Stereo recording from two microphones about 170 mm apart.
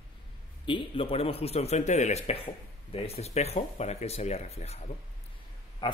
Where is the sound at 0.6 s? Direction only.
30° left (ahead or behind).